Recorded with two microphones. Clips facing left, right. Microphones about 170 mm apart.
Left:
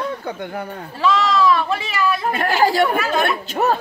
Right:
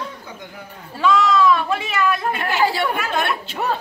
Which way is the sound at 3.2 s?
45° left (ahead or behind).